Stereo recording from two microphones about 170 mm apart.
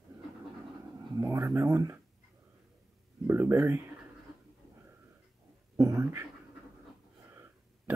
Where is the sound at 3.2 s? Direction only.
15° right (ahead or behind).